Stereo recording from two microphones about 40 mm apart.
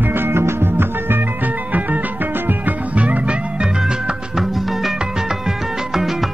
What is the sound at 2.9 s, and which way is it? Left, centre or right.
Music, right.